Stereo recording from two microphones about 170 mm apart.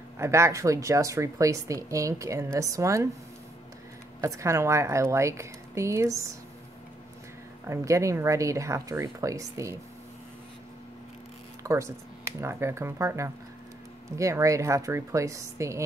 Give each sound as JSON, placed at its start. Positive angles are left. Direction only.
{"t": 0.2, "sound": "speech", "side_deg": -15}
{"t": 4.2, "sound": "speech", "side_deg": -20}
{"t": 7.6, "sound": "speech", "side_deg": -15}
{"t": 11.6, "sound": "speech", "side_deg": -15}